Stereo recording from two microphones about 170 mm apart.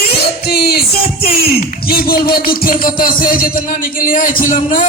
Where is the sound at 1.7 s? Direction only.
60° left (ahead or behind).